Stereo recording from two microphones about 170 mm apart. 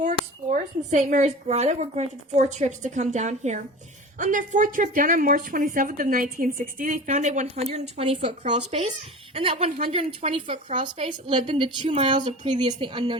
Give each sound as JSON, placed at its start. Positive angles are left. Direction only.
{"t": 0.0, "sound": "speech", "side_deg": -45}
{"t": 7.1, "sound": "a woman's voice", "side_deg": -45}